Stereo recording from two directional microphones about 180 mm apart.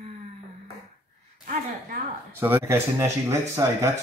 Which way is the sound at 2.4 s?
15° right (ahead or behind).